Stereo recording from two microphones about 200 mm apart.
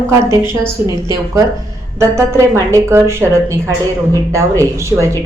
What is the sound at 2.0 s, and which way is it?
A woman's voice, 15° right (ahead or behind).